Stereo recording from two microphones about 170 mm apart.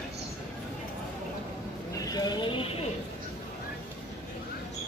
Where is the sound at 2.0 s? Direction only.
25° left (ahead or behind).